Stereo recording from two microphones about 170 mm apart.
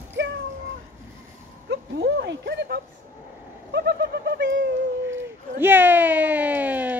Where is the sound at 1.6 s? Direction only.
85° right.